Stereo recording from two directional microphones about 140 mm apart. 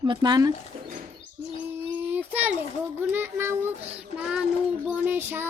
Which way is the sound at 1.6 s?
15° right (ahead or behind).